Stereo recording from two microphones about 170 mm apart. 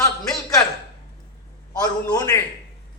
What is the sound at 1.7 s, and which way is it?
Speech, 20° left (ahead or behind).